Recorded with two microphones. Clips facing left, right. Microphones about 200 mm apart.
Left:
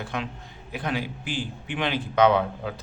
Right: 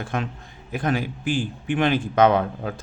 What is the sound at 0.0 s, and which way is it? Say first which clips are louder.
A man's voice: right 4 dB; 45° right (ahead or behind).